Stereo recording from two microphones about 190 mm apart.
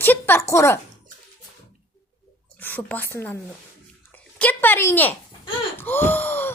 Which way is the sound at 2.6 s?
10° left (ahead or behind).